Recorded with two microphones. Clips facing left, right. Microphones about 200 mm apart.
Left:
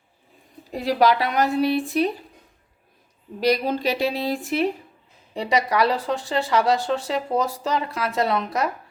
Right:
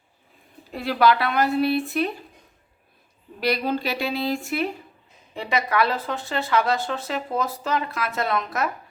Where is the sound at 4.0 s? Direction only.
40° left (ahead or behind).